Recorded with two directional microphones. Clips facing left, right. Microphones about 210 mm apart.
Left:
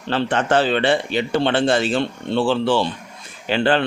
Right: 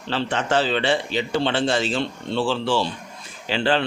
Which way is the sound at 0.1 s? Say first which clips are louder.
Left 4 dB; 55° left (ahead or behind).